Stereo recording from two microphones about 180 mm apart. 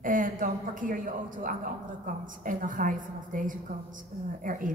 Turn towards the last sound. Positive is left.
turn(degrees=-50)  # may be behind; listen again after turning